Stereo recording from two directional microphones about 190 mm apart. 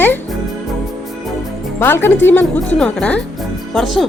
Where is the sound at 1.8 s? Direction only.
10° left (ahead or behind).